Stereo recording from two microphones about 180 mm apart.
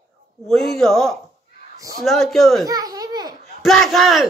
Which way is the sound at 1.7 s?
20° right (ahead or behind).